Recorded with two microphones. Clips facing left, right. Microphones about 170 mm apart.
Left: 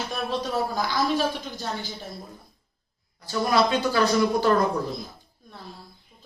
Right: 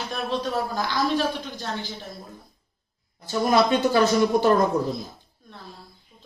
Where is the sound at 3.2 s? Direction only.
20° right (ahead or behind).